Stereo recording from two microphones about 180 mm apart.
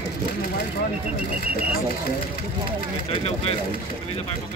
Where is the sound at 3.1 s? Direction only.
35° left (ahead or behind).